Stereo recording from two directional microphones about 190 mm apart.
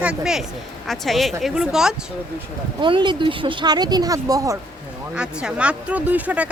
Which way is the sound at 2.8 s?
25° right (ahead or behind).